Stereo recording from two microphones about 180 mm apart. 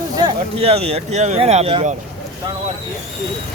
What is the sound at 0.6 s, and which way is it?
Speech, 35° right (ahead or behind).